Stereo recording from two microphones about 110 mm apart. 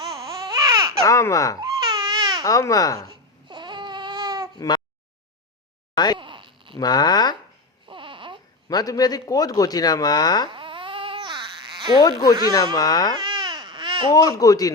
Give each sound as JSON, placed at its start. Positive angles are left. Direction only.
{"t": 0.1, "sound": "baby cry", "side_deg": -35}
{"t": 1.0, "sound": "speech", "side_deg": 30}
{"t": 1.6, "sound": "baby cry", "side_deg": -40}
{"t": 2.4, "sound": "speech", "side_deg": 30}
{"t": 3.1, "sound": "babbling", "side_deg": -45}
{"t": 4.5, "sound": "speech", "side_deg": 40}
{"t": 6.1, "sound": "a sound", "side_deg": -50}
{"t": 6.7, "sound": "speech", "side_deg": 40}
{"t": 7.9, "sound": "a sound", "side_deg": -50}
{"t": 8.7, "sound": "speech", "side_deg": 35}
{"t": 10.5, "sound": "babbling", "side_deg": -50}
{"t": 11.9, "sound": "speech", "side_deg": 35}
{"t": 13.2, "sound": "baby cry", "side_deg": -45}
{"t": 14.1, "sound": "speech", "side_deg": 35}